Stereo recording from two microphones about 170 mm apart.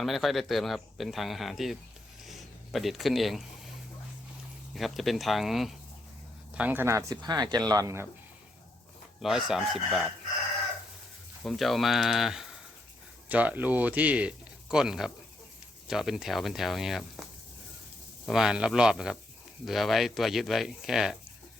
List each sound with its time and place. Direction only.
0.0 s speech: centre (ahead or behind)
2.2 s a sound: centre (ahead or behind)
4.7 s speech: centre (ahead or behind); by 8.0 s 20° right (ahead or behind)
9.2 s speech: centre (ahead or behind)
11.4 s speech: centre (ahead or behind)
17.2 s a sound: centre (ahead or behind)
18.3 s speech: 5° right (ahead or behind)